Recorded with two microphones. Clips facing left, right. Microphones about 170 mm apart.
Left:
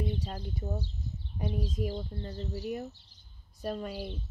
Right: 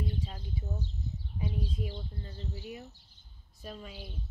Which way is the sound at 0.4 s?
70° left (ahead or behind).